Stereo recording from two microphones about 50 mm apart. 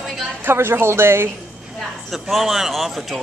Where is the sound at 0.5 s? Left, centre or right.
Right.